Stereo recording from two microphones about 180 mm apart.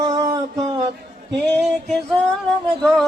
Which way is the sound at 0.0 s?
20° right (ahead or behind).